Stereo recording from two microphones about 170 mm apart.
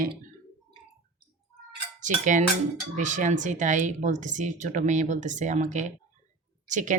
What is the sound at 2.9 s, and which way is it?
A woman's voice, 45° right (ahead or behind).